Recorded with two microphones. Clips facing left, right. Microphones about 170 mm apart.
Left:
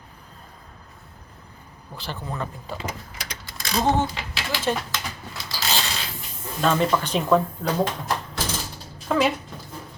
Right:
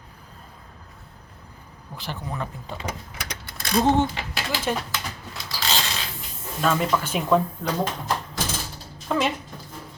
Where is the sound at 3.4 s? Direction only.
60° right (ahead or behind).